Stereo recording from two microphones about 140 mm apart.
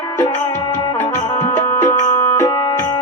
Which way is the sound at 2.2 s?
25° left (ahead or behind).